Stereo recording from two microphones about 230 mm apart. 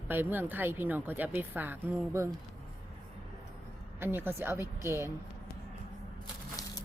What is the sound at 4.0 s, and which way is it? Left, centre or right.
A woman's voice, centre.